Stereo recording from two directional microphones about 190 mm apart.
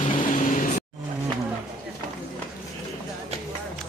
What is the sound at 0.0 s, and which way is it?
Vehicle, 40° left (ahead or behind).